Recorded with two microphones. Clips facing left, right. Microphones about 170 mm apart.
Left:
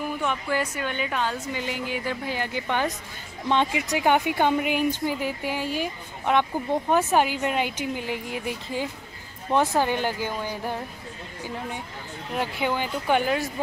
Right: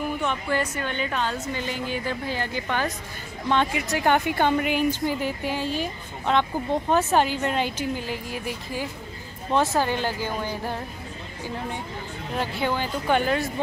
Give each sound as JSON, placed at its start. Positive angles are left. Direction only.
{"t": 0.2, "sound": "a woman's voice", "side_deg": 5}
{"t": 12.4, "sound": "a woman's voice", "side_deg": 15}